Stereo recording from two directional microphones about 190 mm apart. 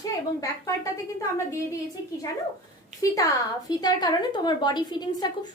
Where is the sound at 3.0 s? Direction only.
20° left (ahead or behind).